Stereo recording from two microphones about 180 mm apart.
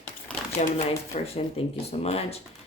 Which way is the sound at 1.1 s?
40° left (ahead or behind).